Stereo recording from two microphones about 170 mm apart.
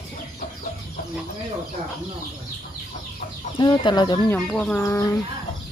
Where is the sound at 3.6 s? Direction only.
25° left (ahead or behind).